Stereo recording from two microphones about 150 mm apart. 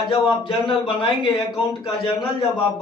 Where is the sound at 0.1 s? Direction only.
35° left (ahead or behind).